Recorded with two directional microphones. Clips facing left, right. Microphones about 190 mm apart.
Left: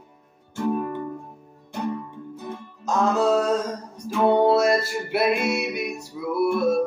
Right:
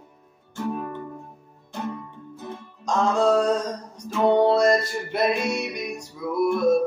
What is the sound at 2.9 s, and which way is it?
Mantra, 5° left (ahead or behind).